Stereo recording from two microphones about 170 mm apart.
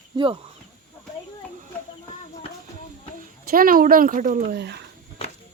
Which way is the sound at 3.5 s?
60° right (ahead or behind).